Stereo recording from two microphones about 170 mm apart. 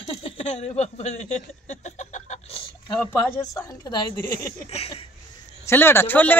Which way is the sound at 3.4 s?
20° left (ahead or behind).